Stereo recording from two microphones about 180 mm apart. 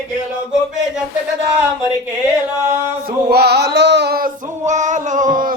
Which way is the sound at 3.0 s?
65° right (ahead or behind).